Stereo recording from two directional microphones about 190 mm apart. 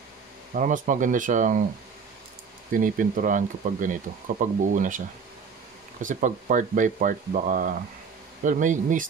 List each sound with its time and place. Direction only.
0.6 s speech: 40° right (ahead or behind)
2.7 s speech: 45° right (ahead or behind)
6.0 s speech: 45° right (ahead or behind)